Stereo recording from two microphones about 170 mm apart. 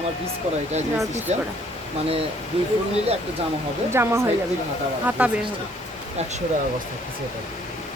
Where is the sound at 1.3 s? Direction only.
40° right (ahead or behind).